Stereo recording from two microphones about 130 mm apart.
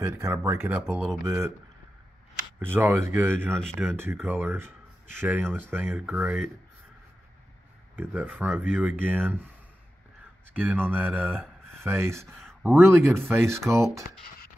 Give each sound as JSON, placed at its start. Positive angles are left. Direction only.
{"t": 0.0, "sound": "speech", "side_deg": -20}
{"t": 2.6, "sound": "speech", "side_deg": -15}
{"t": 7.9, "sound": "speech", "side_deg": -15}
{"t": 10.5, "sound": "speech", "side_deg": -15}
{"t": 12.3, "sound": "a sound", "side_deg": 0}
{"t": 12.8, "sound": "speech", "side_deg": -20}